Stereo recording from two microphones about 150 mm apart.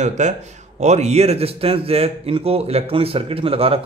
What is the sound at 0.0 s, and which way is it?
A man's voice, 50° right (ahead or behind).